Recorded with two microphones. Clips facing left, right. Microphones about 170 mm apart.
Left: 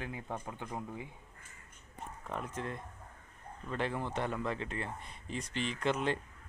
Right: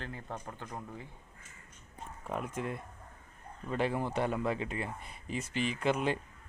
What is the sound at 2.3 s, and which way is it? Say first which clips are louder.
Speech: right 3 dB; 10° right (ahead or behind).